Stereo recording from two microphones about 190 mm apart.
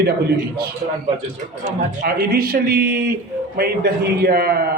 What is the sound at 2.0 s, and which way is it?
A man's voice, 50° right (ahead or behind).